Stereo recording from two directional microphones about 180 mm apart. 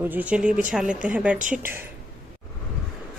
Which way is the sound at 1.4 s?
45° right (ahead or behind).